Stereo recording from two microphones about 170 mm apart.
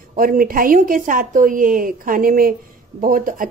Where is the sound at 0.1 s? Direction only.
55° right (ahead or behind).